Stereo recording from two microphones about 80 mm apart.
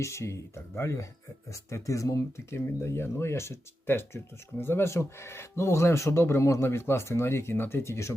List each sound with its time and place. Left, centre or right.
0.0 s speech: left